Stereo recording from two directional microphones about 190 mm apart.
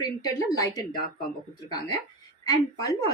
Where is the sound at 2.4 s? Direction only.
20° left (ahead or behind).